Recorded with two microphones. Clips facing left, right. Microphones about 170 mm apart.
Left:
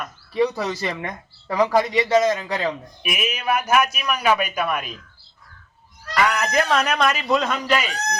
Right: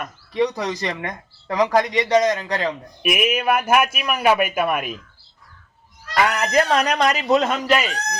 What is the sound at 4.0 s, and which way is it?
Speech, 10° right (ahead or behind).